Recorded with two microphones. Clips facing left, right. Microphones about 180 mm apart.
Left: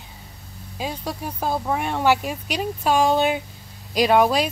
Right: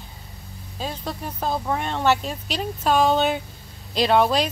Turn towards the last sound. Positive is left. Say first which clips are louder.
# left 1 dB
turn(degrees=10)  # may be behind; listen again after turning